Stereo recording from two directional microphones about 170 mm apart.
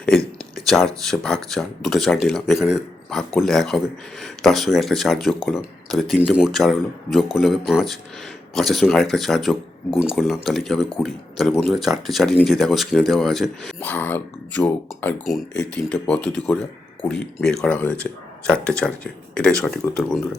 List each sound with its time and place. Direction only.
0.5 s speech: 5° left (ahead or behind)